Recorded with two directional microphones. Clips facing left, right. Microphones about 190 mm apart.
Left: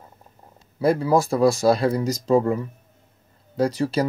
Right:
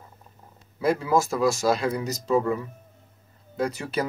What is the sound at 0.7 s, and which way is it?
Speech, 35° left (ahead or behind).